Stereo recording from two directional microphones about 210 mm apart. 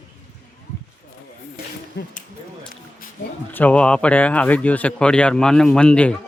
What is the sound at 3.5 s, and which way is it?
Speech, 5° left (ahead or behind).